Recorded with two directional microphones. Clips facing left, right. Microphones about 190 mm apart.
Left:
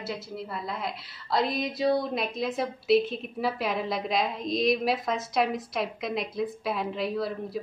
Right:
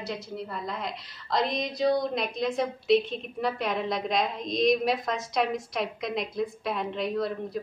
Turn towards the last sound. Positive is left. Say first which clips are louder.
# right 1 dB
turn(degrees=0)  # may be behind; listen again after turning